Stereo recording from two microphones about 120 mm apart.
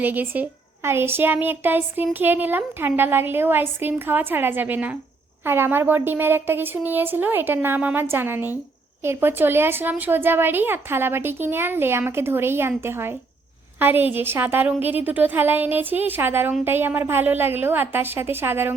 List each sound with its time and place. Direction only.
0.0 s a woman's voice: 15° right (ahead or behind)